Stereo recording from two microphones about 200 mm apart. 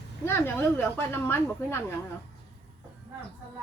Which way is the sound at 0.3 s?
10° left (ahead or behind).